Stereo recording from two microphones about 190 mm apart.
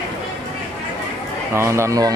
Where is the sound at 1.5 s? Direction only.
15° right (ahead or behind).